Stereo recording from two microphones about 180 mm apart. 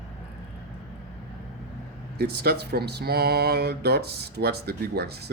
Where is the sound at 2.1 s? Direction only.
60° right (ahead or behind).